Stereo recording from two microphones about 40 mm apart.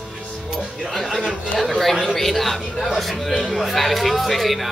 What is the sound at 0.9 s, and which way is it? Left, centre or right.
A man's voice, centre.